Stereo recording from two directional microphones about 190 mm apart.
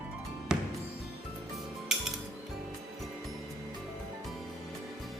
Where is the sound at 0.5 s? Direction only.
5° right (ahead or behind).